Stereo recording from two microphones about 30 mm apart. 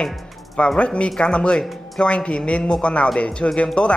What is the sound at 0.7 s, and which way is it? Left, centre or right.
A woman's voice, left.